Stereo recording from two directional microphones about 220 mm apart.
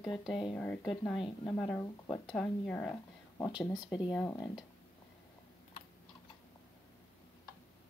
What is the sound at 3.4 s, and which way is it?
Speech, 15° left (ahead or behind).